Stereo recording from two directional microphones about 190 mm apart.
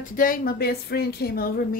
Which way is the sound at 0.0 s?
45° left (ahead or behind).